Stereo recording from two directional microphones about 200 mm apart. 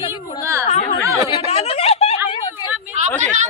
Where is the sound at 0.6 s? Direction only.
35° left (ahead or behind).